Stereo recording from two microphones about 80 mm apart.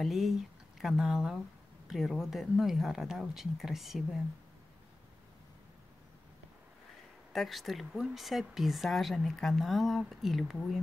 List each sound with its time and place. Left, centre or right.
0.0 s speech: centre
7.3 s speech: centre